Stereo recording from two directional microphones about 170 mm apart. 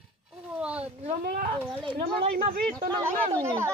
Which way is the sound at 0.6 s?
5° right (ahead or behind).